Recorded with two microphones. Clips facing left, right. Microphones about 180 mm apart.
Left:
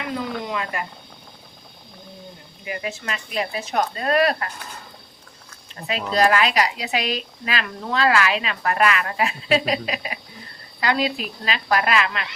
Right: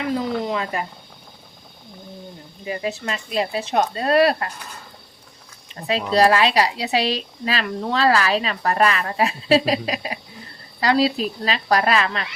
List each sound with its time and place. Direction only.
0.4 s a sound: 30° right (ahead or behind)
2.6 s speech: 30° right (ahead or behind)
6.1 s speech: 30° right (ahead or behind)